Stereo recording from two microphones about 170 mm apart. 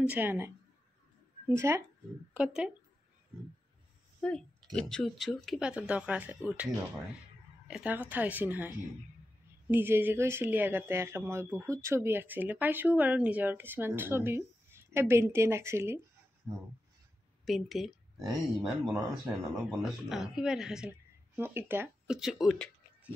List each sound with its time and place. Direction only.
0.1 s speech: 10° right (ahead or behind)
1.5 s speech: 15° right (ahead or behind)
4.2 s speech: 5° left (ahead or behind); by 16.6 s 10° right (ahead or behind)
17.5 s speech: centre (ahead or behind)